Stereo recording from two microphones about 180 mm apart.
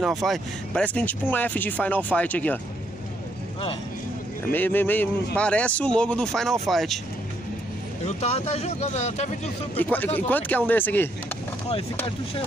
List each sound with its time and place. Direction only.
0.0 s speech: centre (ahead or behind)
4.5 s speech: 10° left (ahead or behind)
8.0 s speech: 35° left (ahead or behind)
9.8 s speech: 10° left (ahead or behind)
11.7 s speech: 30° left (ahead or behind)